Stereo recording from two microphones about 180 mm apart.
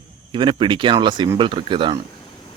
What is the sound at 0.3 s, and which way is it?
Speech, 25° right (ahead or behind).